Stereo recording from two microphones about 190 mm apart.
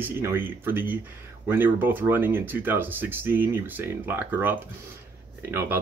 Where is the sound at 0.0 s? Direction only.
10° right (ahead or behind).